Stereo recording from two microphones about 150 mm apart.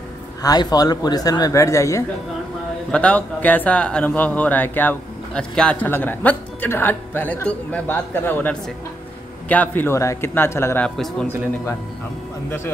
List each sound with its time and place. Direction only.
0.4 s a man's voice: 25° left (ahead or behind)
2.9 s speech: 10° left (ahead or behind)
12.4 s speech: 15° left (ahead or behind)